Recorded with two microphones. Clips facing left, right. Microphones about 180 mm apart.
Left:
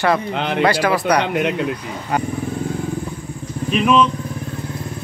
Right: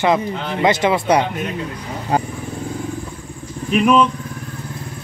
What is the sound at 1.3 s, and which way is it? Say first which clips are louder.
Speech: left 6 dB; 70° left (ahead or behind).